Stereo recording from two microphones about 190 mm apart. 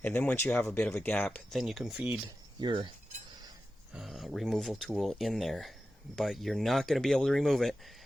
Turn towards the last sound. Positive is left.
turn(degrees=0)  # may be behind; listen again after turning